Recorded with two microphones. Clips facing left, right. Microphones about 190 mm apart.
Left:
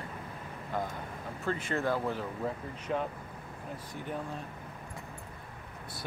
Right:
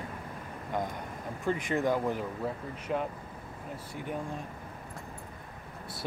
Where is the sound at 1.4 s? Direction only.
15° right (ahead or behind).